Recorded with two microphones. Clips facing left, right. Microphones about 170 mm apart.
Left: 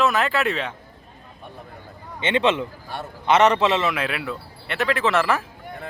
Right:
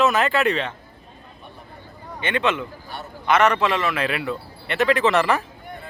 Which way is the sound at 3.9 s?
Centre (ahead or behind).